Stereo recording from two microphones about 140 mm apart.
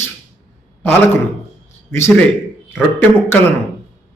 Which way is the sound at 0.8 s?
15° left (ahead or behind).